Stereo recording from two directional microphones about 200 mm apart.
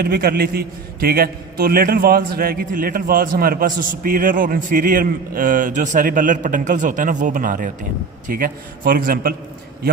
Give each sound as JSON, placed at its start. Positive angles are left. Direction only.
{"t": 0.0, "sound": "a man's voice", "side_deg": -50}